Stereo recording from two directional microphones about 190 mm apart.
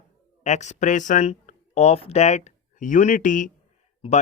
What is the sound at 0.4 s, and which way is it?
Speech, 40° left (ahead or behind).